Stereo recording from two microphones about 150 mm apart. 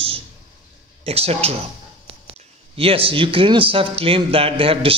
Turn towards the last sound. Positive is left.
turn(degrees=-40)  # may be behind; listen again after turning